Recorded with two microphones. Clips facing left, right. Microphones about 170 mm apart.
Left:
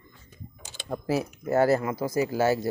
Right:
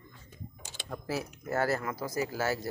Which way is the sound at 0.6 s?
25° left (ahead or behind).